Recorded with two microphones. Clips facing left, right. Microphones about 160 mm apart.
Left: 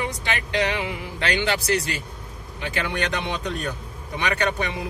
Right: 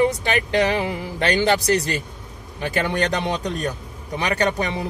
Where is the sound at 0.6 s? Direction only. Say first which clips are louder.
Right 5 dB; 40° right (ahead or behind).